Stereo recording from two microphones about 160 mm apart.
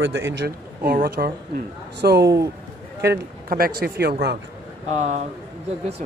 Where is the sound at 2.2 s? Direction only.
20° right (ahead or behind).